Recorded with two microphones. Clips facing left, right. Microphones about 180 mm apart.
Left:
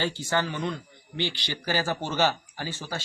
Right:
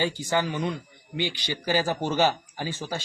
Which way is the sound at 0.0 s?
15° right (ahead or behind).